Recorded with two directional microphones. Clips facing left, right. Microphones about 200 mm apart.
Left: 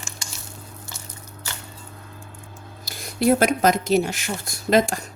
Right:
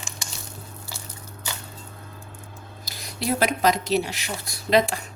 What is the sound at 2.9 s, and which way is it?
Speech, 50° left (ahead or behind).